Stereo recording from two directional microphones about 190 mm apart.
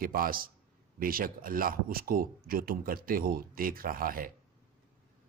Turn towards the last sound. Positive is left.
turn(degrees=-50)  # may be behind; listen again after turning